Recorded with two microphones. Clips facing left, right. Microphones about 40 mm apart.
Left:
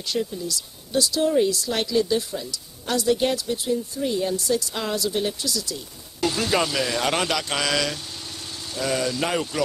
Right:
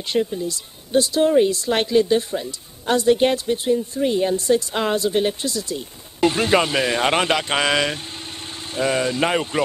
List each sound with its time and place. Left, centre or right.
0.0 s speech: right